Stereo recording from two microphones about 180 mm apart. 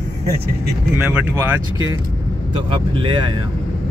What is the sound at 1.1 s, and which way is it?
Speech, 15° right (ahead or behind).